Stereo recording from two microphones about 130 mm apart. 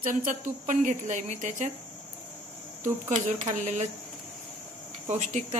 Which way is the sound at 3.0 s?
70° right (ahead or behind).